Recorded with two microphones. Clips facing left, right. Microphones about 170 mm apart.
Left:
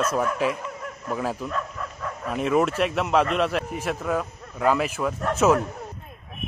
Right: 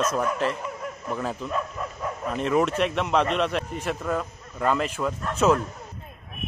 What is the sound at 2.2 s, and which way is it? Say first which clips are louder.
A man's voice: left 1 dB; 5° left (ahead or behind).